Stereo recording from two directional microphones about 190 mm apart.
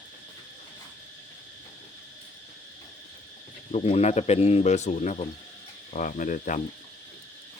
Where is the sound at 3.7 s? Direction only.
35° left (ahead or behind).